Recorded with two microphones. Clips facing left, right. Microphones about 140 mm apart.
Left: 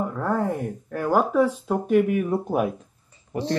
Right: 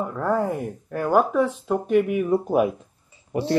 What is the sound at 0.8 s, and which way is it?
Speech, centre (ahead or behind).